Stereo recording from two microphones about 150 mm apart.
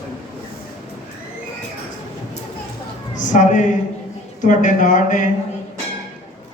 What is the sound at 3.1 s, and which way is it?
A woman's voice, 55° left (ahead or behind).